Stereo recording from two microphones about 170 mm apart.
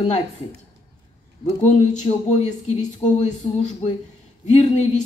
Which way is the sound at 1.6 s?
40° left (ahead or behind).